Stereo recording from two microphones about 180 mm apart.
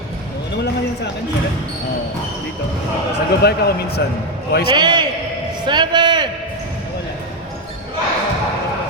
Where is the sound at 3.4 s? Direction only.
60° left (ahead or behind).